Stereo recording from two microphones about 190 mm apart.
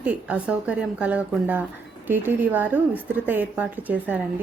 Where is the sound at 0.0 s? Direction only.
5° right (ahead or behind).